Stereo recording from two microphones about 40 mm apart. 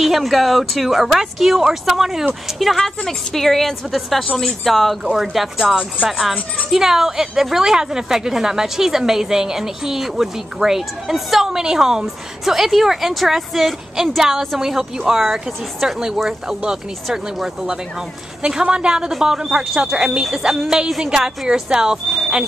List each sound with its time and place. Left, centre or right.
0.0 s speech: centre
3.1 s a woman's voice: centre
5.0 s a woman's voice: centre
21.0 s a woman's voice: right